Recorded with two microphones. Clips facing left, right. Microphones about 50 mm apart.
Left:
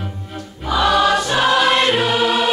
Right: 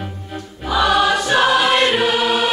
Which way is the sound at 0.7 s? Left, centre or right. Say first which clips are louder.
Even; centre.